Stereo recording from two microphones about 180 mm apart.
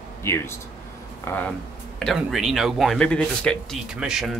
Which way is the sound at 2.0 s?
Centre (ahead or behind).